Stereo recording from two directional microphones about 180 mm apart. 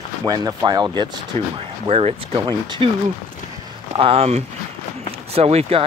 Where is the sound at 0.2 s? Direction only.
20° right (ahead or behind).